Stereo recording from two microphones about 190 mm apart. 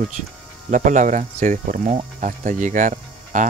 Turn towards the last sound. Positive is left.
turn(degrees=-40)  # may be behind; listen again after turning